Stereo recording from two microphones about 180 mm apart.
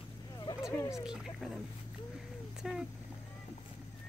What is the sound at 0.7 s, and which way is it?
Speech, 15° left (ahead or behind).